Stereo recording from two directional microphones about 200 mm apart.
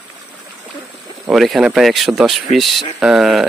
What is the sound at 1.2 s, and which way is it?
Speech, centre (ahead or behind).